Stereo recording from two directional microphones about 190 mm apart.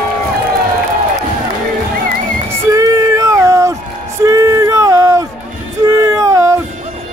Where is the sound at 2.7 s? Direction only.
15° right (ahead or behind).